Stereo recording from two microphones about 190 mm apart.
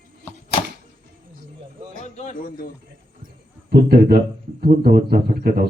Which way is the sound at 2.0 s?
40° left (ahead or behind).